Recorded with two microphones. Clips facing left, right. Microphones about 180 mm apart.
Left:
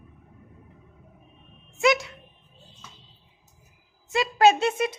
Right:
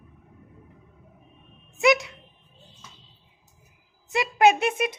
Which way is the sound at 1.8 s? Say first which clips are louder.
Right 1 dB; 20° right (ahead or behind).